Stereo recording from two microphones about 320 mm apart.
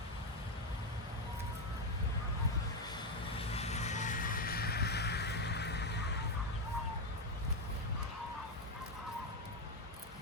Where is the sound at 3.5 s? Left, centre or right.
Centre.